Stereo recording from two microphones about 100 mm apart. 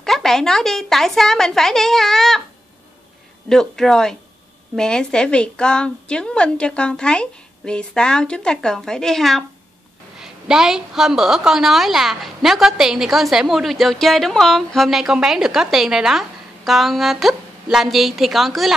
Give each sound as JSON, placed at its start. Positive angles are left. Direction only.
{"t": 0.0, "sound": "a woman's voice", "side_deg": 5}
{"t": 3.4, "sound": "a woman's voice", "side_deg": 5}